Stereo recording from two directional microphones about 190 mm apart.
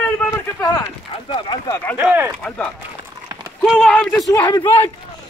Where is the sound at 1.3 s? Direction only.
25° left (ahead or behind).